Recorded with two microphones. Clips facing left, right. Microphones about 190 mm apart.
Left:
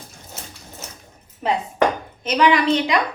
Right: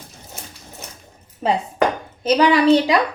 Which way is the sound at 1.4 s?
30° right (ahead or behind).